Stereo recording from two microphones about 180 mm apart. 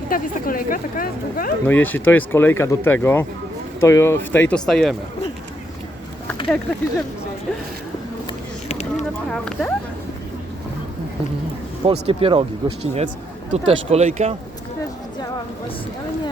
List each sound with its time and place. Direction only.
0.1 s speech: 50° left (ahead or behind)
1.6 s speech: 10° left (ahead or behind)
8.7 s a sound: 40° left (ahead or behind)
9.3 s speech: 5° left (ahead or behind)
11.9 s speech: 30° right (ahead or behind)